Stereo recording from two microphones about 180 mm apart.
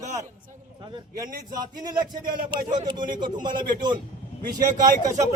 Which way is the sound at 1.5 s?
20° right (ahead or behind).